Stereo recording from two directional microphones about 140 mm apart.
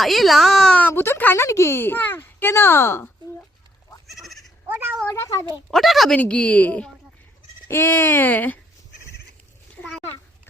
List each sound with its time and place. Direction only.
0.0 s speech: centre (ahead or behind); by 3.1 s 15° left (ahead or behind)
4.0 s goat: centre (ahead or behind)
4.7 s speech: 15° right (ahead or behind)
5.0 s a child's voice: 20° left (ahead or behind)
5.7 s speech: centre (ahead or behind)